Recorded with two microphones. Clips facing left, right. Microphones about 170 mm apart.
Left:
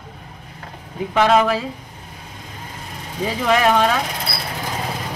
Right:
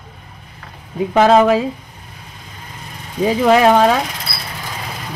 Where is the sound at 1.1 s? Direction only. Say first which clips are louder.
Right 4 dB; 40° right (ahead or behind).